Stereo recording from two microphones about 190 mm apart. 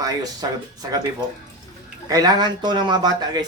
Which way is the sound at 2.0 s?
20° right (ahead or behind).